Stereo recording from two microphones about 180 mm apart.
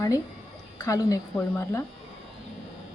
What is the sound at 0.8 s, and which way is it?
Speech, 20° left (ahead or behind).